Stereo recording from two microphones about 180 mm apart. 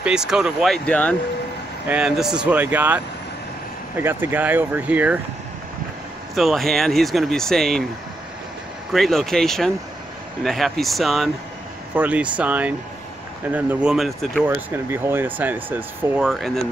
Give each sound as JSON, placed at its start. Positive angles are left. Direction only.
{"t": 0.0, "sound": "speech", "side_deg": -5}
{"t": 1.9, "sound": "speech", "side_deg": -5}
{"t": 6.3, "sound": "speech", "side_deg": 0}
{"t": 8.9, "sound": "speech", "side_deg": 0}
{"t": 14.5, "sound": "speech", "side_deg": -15}